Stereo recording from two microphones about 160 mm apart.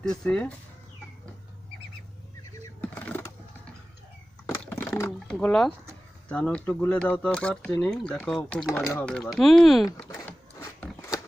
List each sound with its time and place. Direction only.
0.0 s speech: 5° left (ahead or behind)
2.8 s a sound: 10° left (ahead or behind)
4.6 s water: 5° left (ahead or behind)
5.0 s speech: 5° left (ahead or behind)
10.2 s zipper: 20° left (ahead or behind)